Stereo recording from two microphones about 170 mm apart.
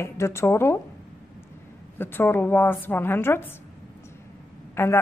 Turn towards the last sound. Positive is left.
turn(degrees=15)  # may be behind; listen again after turning